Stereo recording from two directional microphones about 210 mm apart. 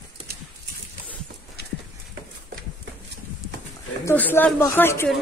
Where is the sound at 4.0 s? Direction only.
10° left (ahead or behind).